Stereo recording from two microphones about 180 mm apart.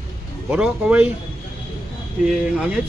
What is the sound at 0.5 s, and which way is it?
Speech, 5° right (ahead or behind).